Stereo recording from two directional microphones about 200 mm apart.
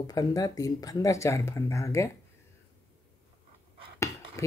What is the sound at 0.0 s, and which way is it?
Speech, 20° left (ahead or behind).